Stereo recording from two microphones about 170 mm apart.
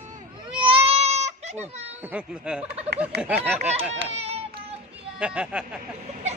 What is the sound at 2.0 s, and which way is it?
Turkey, 5° right (ahead or behind).